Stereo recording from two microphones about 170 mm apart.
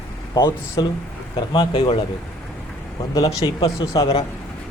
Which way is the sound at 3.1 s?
20° left (ahead or behind).